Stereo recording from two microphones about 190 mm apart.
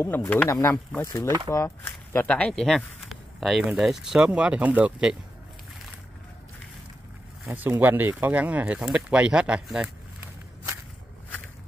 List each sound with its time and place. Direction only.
0.0 s speech: 10° left (ahead or behind)
1.2 s speech: 20° right (ahead or behind)
1.5 s speech: 15° left (ahead or behind); by 5.1 s 10° right (ahead or behind)
7.4 s speech: 10° right (ahead or behind)